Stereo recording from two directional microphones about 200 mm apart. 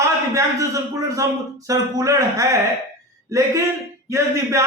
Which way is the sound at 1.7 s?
15° right (ahead or behind).